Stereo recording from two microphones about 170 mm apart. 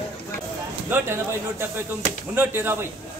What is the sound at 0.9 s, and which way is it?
A man's voice, 15° right (ahead or behind).